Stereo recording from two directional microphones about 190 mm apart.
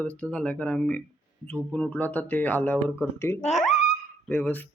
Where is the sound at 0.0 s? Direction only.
5° left (ahead or behind).